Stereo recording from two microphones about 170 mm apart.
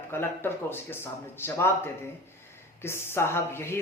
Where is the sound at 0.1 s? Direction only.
15° left (ahead or behind).